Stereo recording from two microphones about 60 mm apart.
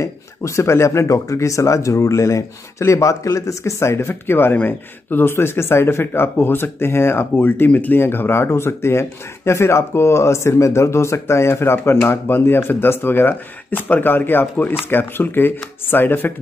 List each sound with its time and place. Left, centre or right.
0.0 s speech: left
4.1 s speech: left